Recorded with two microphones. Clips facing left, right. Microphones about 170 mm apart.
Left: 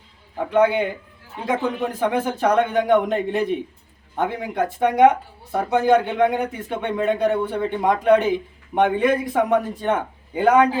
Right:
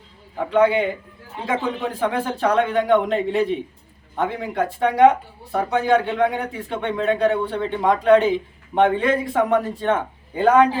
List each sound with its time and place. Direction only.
0.5 s speech: 15° left (ahead or behind)
1.9 s speech: 20° left (ahead or behind)